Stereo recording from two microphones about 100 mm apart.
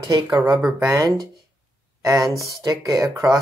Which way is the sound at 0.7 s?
35° right (ahead or behind).